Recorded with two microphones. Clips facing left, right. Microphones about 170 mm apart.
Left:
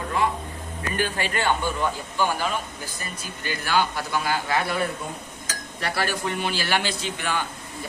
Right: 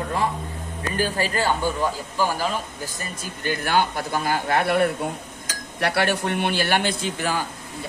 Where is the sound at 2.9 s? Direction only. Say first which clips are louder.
Right 2 dB; 50° right (ahead or behind).